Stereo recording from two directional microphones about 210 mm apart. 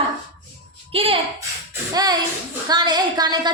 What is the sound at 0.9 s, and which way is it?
A woman's voice, 25° right (ahead or behind).